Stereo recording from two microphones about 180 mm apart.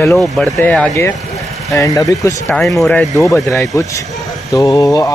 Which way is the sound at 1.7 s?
20° left (ahead or behind).